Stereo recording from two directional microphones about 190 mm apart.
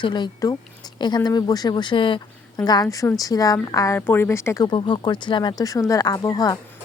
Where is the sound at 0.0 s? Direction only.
25° left (ahead or behind).